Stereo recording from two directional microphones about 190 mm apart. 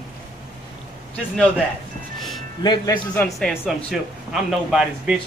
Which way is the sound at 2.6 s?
25° left (ahead or behind).